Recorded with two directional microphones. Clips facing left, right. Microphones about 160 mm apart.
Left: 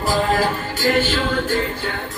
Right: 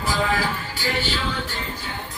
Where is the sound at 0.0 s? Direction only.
45° left (ahead or behind).